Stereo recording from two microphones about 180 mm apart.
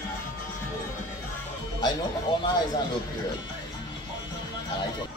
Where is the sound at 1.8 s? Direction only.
25° left (ahead or behind).